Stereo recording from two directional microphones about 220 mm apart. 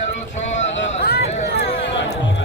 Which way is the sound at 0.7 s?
50° left (ahead or behind).